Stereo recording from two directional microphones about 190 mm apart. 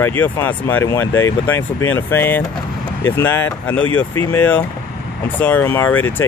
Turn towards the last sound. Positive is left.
turn(degrees=10)  # may be behind; listen again after turning